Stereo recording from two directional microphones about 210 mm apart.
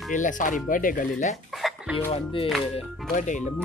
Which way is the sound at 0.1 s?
40° left (ahead or behind).